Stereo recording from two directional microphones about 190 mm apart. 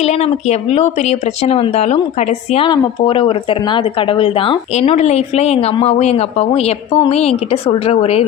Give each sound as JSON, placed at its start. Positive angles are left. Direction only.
{"t": 0.0, "sound": "speech", "side_deg": 35}